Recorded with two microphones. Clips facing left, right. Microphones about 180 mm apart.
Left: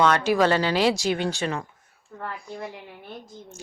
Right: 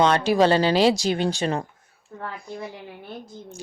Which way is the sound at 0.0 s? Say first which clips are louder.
Right 2 dB; 30° right (ahead or behind).